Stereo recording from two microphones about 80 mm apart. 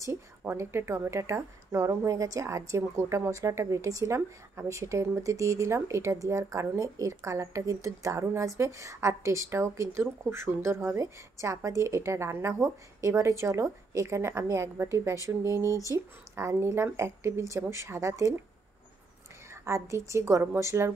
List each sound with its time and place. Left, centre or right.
0.4 s a woman's voice: right
19.5 s a woman's voice: right